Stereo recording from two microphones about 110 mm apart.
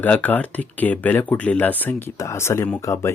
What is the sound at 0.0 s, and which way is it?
Speech, 15° left (ahead or behind).